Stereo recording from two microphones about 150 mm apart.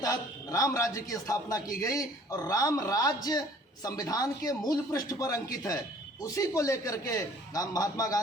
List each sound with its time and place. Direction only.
0.0 s speech: 20° left (ahead or behind)